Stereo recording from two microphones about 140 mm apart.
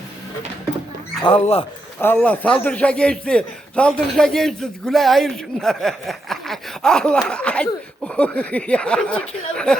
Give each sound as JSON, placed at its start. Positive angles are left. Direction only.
{"t": 1.2, "sound": "speech", "side_deg": 45}
{"t": 2.0, "sound": "a man's voice", "side_deg": 10}